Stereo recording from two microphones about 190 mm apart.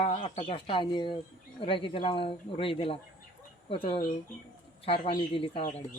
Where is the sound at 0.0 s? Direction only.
35° left (ahead or behind).